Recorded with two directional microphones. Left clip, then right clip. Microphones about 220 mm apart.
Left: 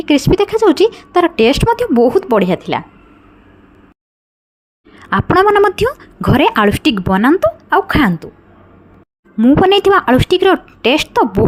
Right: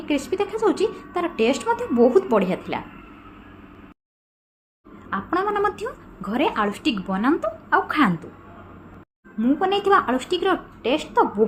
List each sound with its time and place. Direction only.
0.0 s a woman's voice: 45° left (ahead or behind)
5.0 s a woman's voice: 45° left (ahead or behind); by 8.3 s 30° left (ahead or behind)
9.4 s a woman's voice: 40° left (ahead or behind)